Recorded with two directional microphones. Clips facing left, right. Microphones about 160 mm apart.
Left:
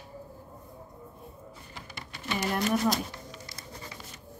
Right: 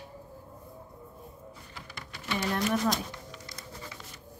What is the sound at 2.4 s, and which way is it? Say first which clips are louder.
Speech: left 1 dB; 15° left (ahead or behind).